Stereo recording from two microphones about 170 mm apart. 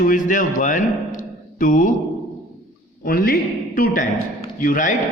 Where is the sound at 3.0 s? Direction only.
60° left (ahead or behind).